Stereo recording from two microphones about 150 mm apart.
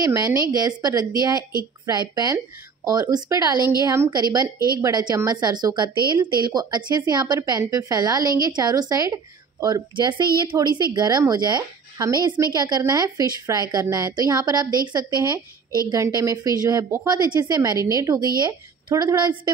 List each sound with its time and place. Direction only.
0.0 s a woman's voice: 25° right (ahead or behind)